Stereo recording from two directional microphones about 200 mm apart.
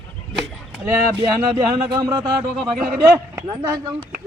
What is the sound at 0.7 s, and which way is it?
Speech, 15° right (ahead or behind).